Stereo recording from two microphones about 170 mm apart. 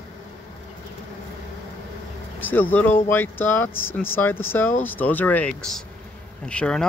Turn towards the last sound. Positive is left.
turn(degrees=5)  # may be behind; listen again after turning